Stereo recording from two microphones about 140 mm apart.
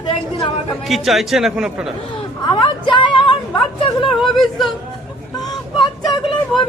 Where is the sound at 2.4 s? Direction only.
35° left (ahead or behind).